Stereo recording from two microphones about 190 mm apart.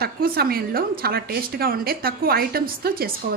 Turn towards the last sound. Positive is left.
turn(degrees=-55)  # may be behind; listen again after turning